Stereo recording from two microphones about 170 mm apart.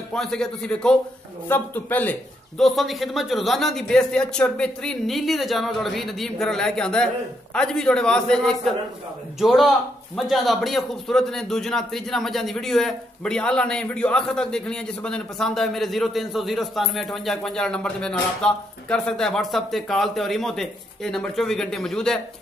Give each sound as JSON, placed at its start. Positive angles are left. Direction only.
{"t": 0.1, "sound": "a man's voice", "side_deg": 5}
{"t": 2.6, "sound": "a man's voice", "side_deg": 0}